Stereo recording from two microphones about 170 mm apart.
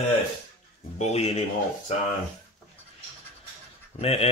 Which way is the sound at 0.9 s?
40° left (ahead or behind).